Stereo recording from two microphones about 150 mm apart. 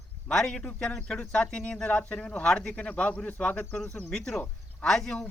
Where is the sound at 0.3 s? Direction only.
5° left (ahead or behind).